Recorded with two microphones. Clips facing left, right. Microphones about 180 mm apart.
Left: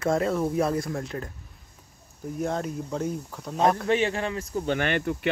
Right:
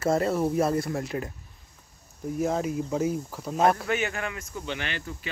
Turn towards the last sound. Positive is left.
turn(degrees=60)  # may be behind; listen again after turning